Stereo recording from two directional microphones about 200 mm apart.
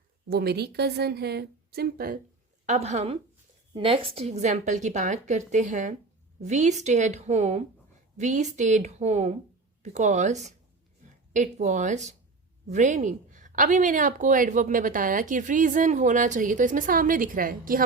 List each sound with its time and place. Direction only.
0.3 s a woman's voice: 50° right (ahead or behind)
2.6 s speech: 35° right (ahead or behind)